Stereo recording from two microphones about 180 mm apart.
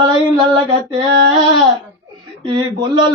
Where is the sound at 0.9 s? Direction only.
25° right (ahead or behind).